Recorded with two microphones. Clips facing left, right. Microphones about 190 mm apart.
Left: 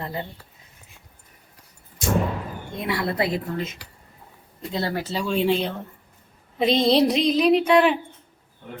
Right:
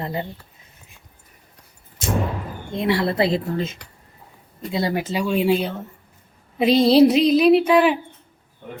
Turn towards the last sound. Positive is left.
turn(degrees=-5)  # may be behind; listen again after turning